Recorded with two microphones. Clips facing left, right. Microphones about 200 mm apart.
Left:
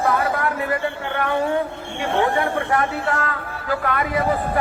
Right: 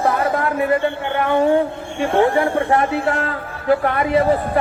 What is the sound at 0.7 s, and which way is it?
A man's voice, 25° right (ahead or behind).